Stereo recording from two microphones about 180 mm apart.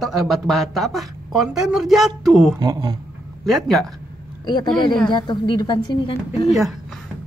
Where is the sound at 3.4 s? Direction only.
Centre (ahead or behind).